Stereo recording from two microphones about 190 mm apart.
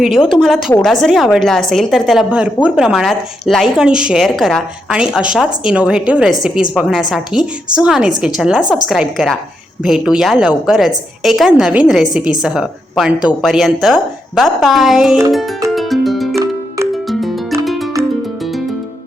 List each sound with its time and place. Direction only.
0.0 s a woman's voice: centre (ahead or behind)
15.7 s music: centre (ahead or behind)
16.3 s music: 15° right (ahead or behind)
17.1 s music: centre (ahead or behind)